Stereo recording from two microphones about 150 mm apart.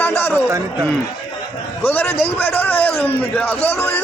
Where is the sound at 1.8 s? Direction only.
15° left (ahead or behind).